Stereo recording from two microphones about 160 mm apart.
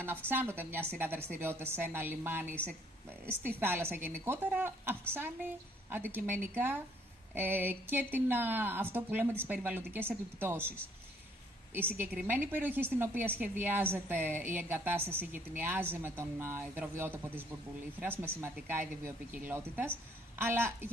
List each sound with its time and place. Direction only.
0.0 s a woman's voice: 10° right (ahead or behind)
11.7 s a woman's voice: 10° right (ahead or behind)